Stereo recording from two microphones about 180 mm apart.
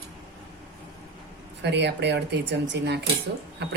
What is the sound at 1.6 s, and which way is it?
A woman's voice, 70° right (ahead or behind).